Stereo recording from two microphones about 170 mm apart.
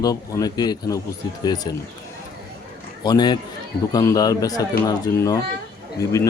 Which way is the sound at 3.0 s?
25° left (ahead or behind).